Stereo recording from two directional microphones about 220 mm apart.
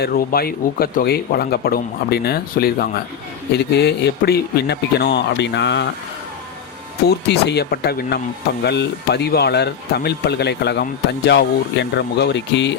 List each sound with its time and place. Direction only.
0.0 s speech: 45° left (ahead or behind)
7.3 s speech: 50° left (ahead or behind)